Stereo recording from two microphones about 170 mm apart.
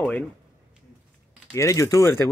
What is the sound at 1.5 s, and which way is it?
Speech, 20° left (ahead or behind).